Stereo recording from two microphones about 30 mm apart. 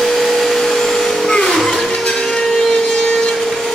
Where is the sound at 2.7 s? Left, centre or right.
Left.